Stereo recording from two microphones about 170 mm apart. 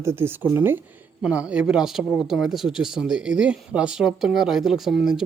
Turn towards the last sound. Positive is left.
turn(degrees=0)  # may be behind; listen again after turning